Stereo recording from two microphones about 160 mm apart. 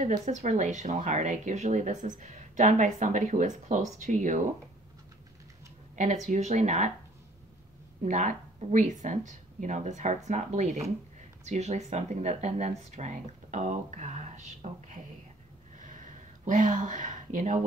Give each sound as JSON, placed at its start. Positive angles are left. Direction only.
{"t": 0.0, "sound": "speech", "side_deg": -50}
{"t": 5.9, "sound": "speech", "side_deg": -50}
{"t": 8.0, "sound": "speech", "side_deg": -50}
{"t": 15.8, "sound": "a sound", "side_deg": -50}